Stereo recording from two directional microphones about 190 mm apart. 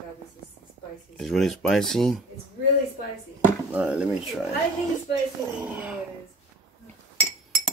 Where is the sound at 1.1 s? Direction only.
Centre (ahead or behind).